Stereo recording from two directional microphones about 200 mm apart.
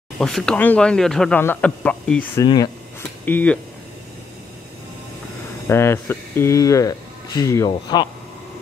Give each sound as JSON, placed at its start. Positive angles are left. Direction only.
{"t": 0.2, "sound": "speech", "side_deg": 0}
{"t": 2.4, "sound": "speech", "side_deg": 20}
{"t": 3.3, "sound": "speech", "side_deg": 10}
{"t": 5.7, "sound": "speech", "side_deg": 10}